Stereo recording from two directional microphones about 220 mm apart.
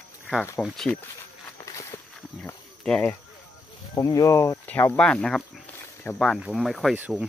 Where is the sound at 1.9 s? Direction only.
20° left (ahead or behind).